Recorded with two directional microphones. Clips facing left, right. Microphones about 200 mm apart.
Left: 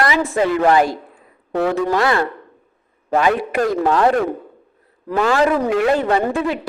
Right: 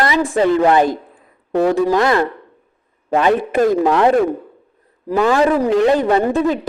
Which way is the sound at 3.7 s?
20° right (ahead or behind).